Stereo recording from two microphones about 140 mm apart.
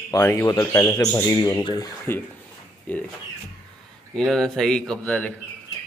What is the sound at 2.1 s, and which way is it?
Speech, 15° left (ahead or behind).